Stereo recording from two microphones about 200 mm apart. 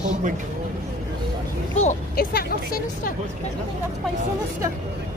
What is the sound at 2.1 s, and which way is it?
Speech, 50° left (ahead or behind).